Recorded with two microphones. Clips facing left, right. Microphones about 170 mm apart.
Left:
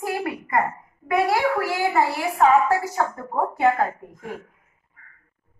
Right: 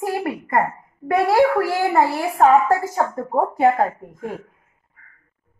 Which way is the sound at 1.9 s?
50° right (ahead or behind).